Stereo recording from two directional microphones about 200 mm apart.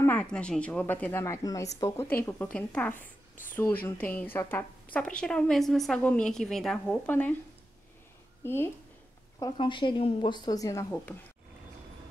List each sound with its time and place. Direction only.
0.0 s a woman's voice: 10° left (ahead or behind)
3.0 s a sound: 40° left (ahead or behind)
3.8 s a woman's voice: 10° left (ahead or behind)
8.5 s a woman's voice: 10° left (ahead or behind)
9.4 s a woman's voice: 25° left (ahead or behind)